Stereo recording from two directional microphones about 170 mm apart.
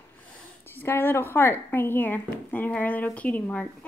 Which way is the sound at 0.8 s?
15° left (ahead or behind).